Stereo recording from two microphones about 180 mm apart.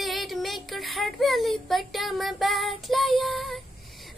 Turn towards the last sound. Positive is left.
turn(degrees=0)  # may be behind; listen again after turning